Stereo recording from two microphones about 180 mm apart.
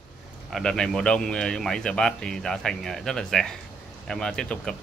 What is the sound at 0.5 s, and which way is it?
Speech, 5° left (ahead or behind).